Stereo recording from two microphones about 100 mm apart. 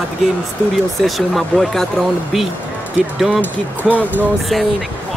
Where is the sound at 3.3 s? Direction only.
15° right (ahead or behind).